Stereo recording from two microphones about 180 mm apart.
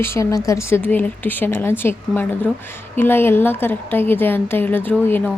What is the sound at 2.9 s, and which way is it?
A woman's voice, 10° left (ahead or behind).